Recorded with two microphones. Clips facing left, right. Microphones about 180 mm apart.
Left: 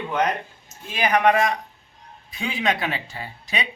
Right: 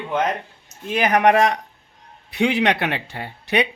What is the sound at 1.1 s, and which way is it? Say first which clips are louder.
Speech: right 3 dB; 65° right (ahead or behind).